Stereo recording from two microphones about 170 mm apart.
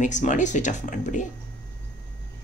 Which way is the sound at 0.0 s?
45° left (ahead or behind).